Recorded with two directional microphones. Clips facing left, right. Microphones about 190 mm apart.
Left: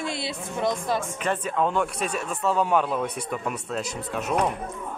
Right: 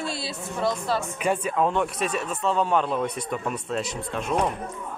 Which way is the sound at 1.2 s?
10° right (ahead or behind).